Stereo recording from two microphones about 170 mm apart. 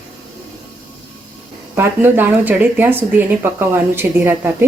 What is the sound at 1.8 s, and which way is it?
Speech, 10° right (ahead or behind).